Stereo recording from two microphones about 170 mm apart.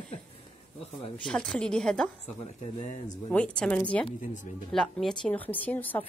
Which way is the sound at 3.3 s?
5° left (ahead or behind).